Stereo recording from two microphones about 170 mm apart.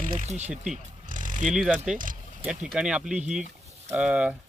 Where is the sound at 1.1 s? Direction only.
50° right (ahead or behind).